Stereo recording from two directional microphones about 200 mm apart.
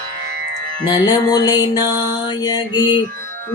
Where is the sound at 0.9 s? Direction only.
20° left (ahead or behind).